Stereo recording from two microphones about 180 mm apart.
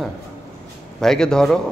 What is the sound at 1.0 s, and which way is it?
Speech, 5° left (ahead or behind).